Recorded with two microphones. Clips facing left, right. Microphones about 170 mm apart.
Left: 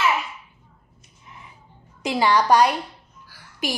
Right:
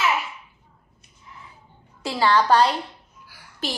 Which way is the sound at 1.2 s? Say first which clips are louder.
Even; 20° left (ahead or behind).